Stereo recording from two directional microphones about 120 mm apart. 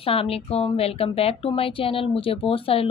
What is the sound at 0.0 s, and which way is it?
A woman's voice, 50° left (ahead or behind).